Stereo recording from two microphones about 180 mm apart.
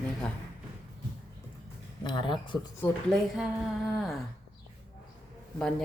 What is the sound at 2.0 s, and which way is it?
Speech, 25° left (ahead or behind).